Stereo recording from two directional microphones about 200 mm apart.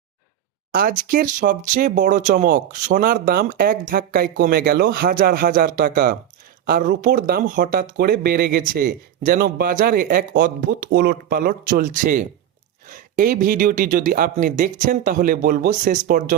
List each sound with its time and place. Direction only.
0.7 s speech: 45° right (ahead or behind)